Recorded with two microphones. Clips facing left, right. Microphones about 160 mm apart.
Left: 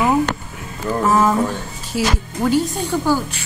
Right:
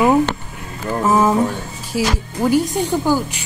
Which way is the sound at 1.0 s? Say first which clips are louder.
Right 1 dB; 10° right (ahead or behind).